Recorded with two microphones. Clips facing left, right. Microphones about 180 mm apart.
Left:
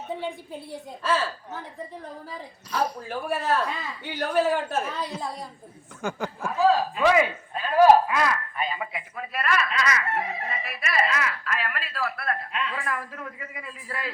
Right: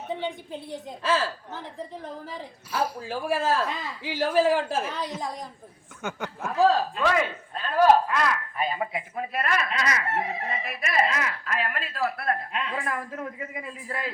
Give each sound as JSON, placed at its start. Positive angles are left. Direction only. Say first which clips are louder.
{"t": 0.2, "sound": "a woman's voice", "louder": "right 1 dB", "side_deg": 5}
{"t": 6.9, "sound": "music", "louder": "left 4 dB", "side_deg": 5}
{"t": 8.5, "sound": "speech", "louder": "right 2 dB", "side_deg": -45}
{"t": 8.9, "sound": "speech", "louder": "right 4 dB", "side_deg": -30}
{"t": 11.9, "sound": "a man's voice", "louder": "right 3 dB", "side_deg": -20}
{"t": 12.3, "sound": "speech", "louder": "right 1 dB", "side_deg": -40}